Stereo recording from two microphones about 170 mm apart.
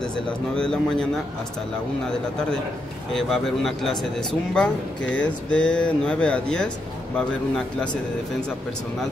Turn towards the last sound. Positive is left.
turn(degrees=5)  # may be behind; listen again after turning